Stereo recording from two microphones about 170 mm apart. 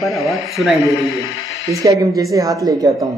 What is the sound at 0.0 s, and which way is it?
Speech, centre (ahead or behind).